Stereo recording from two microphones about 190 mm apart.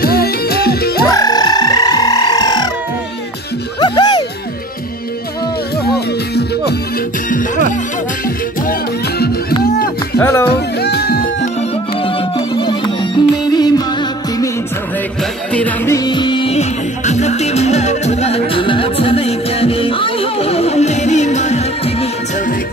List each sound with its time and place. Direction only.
0.0 s music: 55° left (ahead or behind)
1.0 s a sound: 20° left (ahead or behind)
3.8 s music: 25° left (ahead or behind)
5.9 s music: 60° left (ahead or behind)
7.2 s music: 45° left (ahead or behind)
10.1 s music: 15° left (ahead or behind)
10.5 s music: 55° left (ahead or behind)
12.0 s music: 30° left (ahead or behind)
15.5 s music: 10° left (ahead or behind); by 22.0 s 35° left (ahead or behind)